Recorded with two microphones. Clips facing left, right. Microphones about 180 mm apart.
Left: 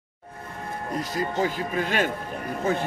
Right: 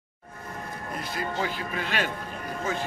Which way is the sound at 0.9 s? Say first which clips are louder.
Left 5 dB; 40° left (ahead or behind).